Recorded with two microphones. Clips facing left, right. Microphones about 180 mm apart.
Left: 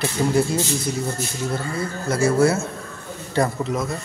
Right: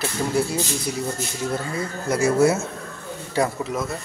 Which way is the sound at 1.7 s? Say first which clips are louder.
Left 1 dB; 15° right (ahead or behind).